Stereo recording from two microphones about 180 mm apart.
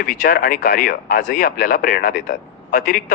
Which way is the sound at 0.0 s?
50° left (ahead or behind).